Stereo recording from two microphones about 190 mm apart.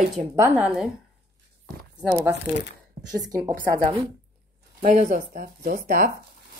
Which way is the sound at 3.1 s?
20° right (ahead or behind).